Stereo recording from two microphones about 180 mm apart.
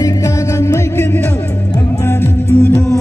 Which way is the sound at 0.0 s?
20° left (ahead or behind).